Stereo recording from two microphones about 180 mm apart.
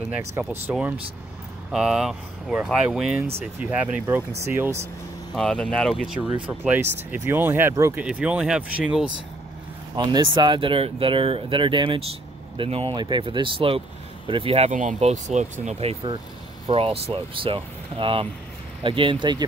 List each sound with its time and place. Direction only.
0.4 s speech: 10° right (ahead or behind)
5.3 s speech: 5° left (ahead or behind)
9.9 s speech: 25° right (ahead or behind)
14.7 s speech: 45° right (ahead or behind); by 19.4 s 25° right (ahead or behind)